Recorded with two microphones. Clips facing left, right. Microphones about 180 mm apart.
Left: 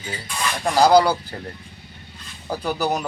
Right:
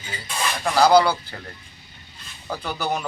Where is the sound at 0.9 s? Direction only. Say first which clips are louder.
Left 1 dB; 40° left (ahead or behind).